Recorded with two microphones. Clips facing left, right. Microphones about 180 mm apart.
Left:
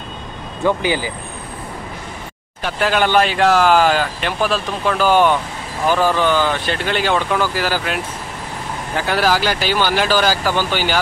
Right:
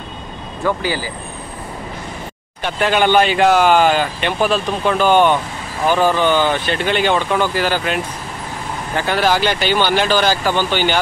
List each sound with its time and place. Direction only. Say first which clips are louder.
0.7 s speech: left 2 dB; 20° left (ahead or behind)
2.6 s speech: right 2 dB; centre (ahead or behind)